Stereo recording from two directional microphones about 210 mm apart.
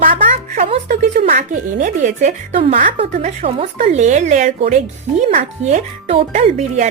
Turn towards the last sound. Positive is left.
turn(degrees=-30)  # may be behind; listen again after turning